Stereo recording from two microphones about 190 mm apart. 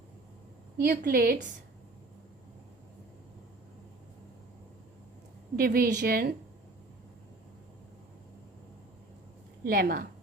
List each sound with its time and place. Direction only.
0.9 s a woman's voice: 50° right (ahead or behind)
5.5 s a woman's voice: 50° right (ahead or behind)
9.6 s a woman's voice: 55° right (ahead or behind)